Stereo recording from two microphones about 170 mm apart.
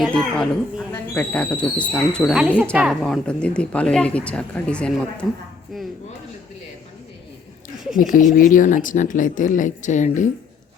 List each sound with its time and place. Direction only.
0.0 s speech: centre (ahead or behind)
7.9 s speech: 50° left (ahead or behind)